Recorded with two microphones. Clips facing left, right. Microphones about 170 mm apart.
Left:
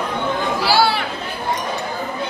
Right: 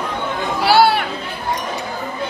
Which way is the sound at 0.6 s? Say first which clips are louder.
Right 5 dB; 60° right (ahead or behind).